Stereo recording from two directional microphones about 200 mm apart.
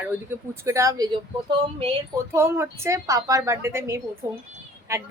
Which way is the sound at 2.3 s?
15° right (ahead or behind).